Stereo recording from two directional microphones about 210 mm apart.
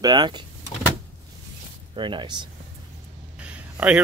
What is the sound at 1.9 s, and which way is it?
Speech, 25° right (ahead or behind).